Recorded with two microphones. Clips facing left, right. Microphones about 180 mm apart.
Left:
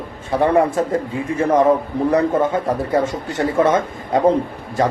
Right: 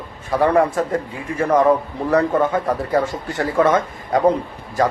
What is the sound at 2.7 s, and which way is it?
A man's voice, 25° left (ahead or behind).